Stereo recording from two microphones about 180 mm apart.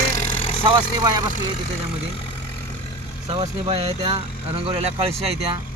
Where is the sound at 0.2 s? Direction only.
45° left (ahead or behind).